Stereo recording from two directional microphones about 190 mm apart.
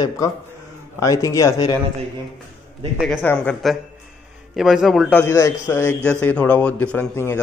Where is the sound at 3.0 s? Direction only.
5° left (ahead or behind).